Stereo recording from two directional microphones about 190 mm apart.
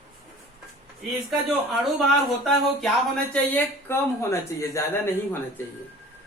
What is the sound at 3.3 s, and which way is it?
Speech, 10° left (ahead or behind).